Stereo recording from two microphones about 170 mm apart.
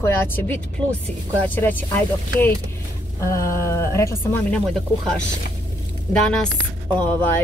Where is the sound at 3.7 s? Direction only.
15° left (ahead or behind).